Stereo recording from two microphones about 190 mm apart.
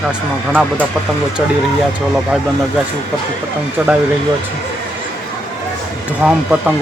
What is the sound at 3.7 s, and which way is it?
Speech, 5° right (ahead or behind).